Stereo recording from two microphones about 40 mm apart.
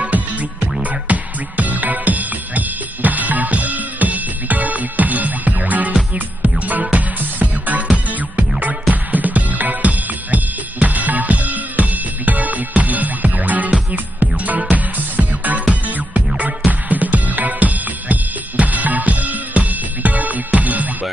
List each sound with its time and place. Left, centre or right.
0.0 s music: right
6.8 s music: right
7.2 s music: right